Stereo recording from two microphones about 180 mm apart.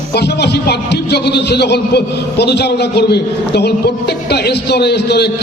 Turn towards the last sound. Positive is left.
turn(degrees=65)  # may be behind; listen again after turning